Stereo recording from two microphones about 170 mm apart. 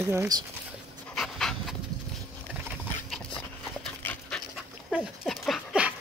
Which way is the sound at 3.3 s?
10° left (ahead or behind).